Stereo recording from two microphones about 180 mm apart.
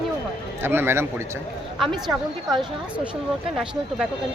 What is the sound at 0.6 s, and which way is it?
Speech, 15° right (ahead or behind).